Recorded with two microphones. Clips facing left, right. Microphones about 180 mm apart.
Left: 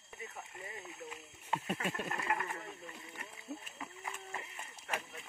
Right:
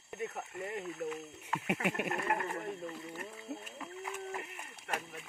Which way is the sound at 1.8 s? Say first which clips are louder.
Right 5 dB; 15° right (ahead or behind).